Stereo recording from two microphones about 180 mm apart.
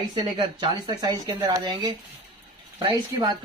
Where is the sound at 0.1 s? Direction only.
25° right (ahead or behind).